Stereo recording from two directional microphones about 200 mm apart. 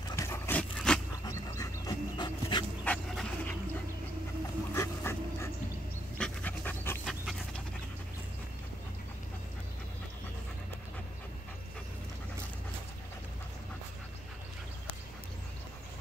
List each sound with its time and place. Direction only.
0.1 s a sound: 15° left (ahead or behind)
1.2 s dog: 20° left (ahead or behind)
2.8 s dog: 5° left (ahead or behind)
4.7 s dog: 15° left (ahead or behind)
6.1 s pant: 5° left (ahead or behind)